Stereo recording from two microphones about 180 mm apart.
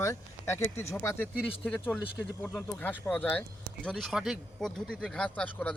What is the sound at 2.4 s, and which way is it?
Speech, 10° left (ahead or behind).